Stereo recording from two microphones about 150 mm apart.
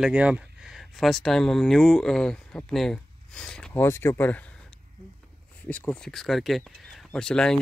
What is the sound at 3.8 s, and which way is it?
Speech, 20° left (ahead or behind).